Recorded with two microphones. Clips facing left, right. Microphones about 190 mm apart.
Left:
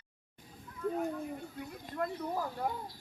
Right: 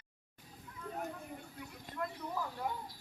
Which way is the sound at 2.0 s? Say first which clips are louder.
Left 5 dB; 45° left (ahead or behind).